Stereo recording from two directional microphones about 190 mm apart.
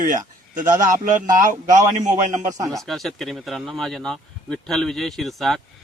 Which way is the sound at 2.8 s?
Centre (ahead or behind).